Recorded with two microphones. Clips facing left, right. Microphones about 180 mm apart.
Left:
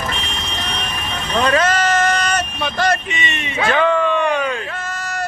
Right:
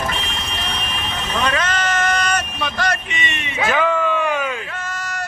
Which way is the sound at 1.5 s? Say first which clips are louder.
Left 7 dB; 35° left (ahead or behind).